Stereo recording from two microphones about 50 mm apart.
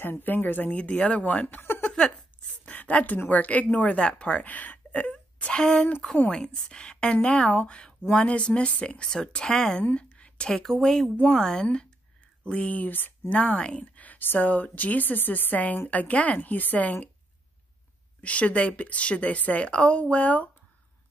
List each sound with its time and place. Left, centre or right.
0.0 s a woman's voice: left
1.8 s a sound: centre
2.6 s a sound: left
3.3 s a woman's voice: left; by 9.8 s centre
9.9 s a sound: left
10.6 s a woman's voice: centre
11.6 s a woman's voice: centre; by 13.1 s left
13.3 s a woman's voice: left
18.2 s a woman's voice: left